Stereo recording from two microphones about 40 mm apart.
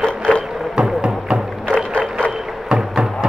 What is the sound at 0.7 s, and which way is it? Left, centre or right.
Music, right.